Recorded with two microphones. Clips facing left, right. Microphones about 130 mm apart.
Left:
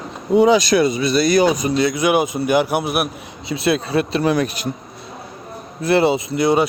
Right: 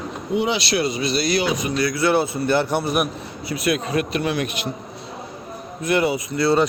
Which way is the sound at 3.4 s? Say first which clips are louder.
Left 3 dB; 25° left (ahead or behind).